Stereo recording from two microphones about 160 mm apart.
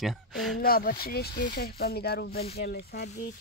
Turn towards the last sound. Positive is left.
turn(degrees=85)